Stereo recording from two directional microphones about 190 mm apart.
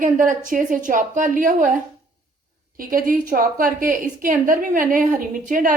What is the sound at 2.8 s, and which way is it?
A woman's voice, 45° right (ahead or behind).